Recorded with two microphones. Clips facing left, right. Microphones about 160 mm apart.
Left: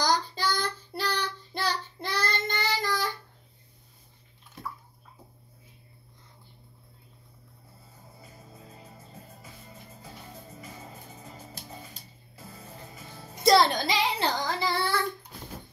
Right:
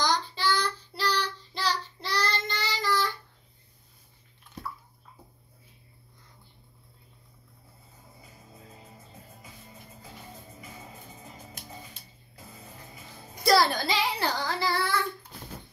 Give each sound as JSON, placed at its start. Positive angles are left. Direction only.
{"t": 0.0, "sound": "child singing", "side_deg": 40}
{"t": 11.6, "sound": "music", "side_deg": 30}
{"t": 13.4, "sound": "child singing", "side_deg": 20}